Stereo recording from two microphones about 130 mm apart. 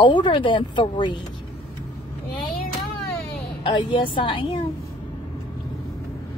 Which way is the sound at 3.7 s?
40° left (ahead or behind).